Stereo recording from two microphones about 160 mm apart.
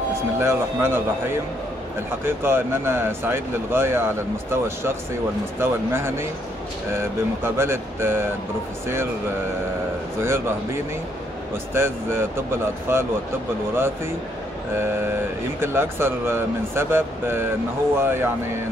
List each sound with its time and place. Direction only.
0.4 s speech: 15° right (ahead or behind)
10.2 s speech: 15° right (ahead or behind)
14.7 s speech: 15° right (ahead or behind)